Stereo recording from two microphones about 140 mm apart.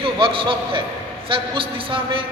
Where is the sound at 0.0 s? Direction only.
40° right (ahead or behind).